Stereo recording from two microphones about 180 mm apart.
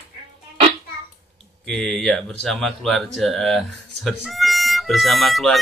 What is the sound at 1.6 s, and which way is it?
Speech, 5° left (ahead or behind).